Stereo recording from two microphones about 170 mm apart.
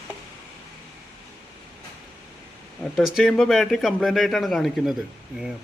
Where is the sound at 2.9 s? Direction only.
Centre (ahead or behind).